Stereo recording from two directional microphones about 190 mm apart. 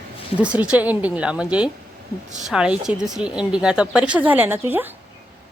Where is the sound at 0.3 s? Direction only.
5° right (ahead or behind).